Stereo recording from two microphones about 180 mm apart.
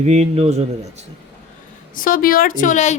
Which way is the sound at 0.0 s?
35° right (ahead or behind).